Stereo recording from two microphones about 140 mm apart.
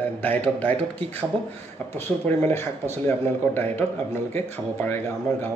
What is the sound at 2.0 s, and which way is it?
Speech, 15° left (ahead or behind).